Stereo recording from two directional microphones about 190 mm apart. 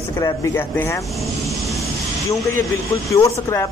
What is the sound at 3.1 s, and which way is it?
Speech, 15° left (ahead or behind).